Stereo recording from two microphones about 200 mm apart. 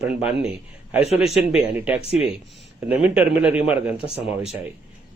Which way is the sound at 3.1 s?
5° right (ahead or behind).